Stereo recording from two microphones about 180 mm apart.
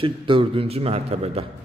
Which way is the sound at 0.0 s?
30° right (ahead or behind).